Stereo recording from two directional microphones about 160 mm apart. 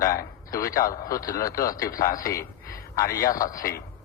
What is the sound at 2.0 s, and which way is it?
A man's voice, 20° left (ahead or behind).